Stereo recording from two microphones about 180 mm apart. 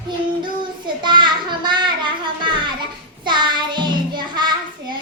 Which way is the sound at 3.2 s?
25° right (ahead or behind).